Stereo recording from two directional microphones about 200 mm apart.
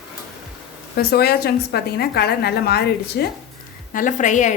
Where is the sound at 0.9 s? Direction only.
50° left (ahead or behind).